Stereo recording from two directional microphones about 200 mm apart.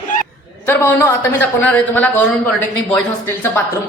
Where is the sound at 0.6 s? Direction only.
10° left (ahead or behind).